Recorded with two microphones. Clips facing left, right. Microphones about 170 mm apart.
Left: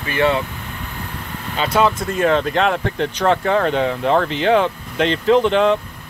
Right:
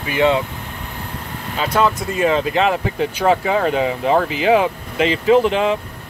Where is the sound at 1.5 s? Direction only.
Centre (ahead or behind).